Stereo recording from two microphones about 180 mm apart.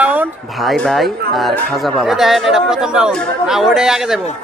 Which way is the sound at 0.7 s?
Centre (ahead or behind).